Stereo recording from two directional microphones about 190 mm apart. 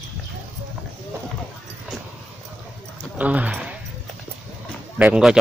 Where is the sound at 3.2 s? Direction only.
10° right (ahead or behind).